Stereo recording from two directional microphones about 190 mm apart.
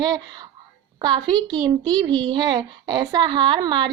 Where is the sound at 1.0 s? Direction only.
20° right (ahead or behind).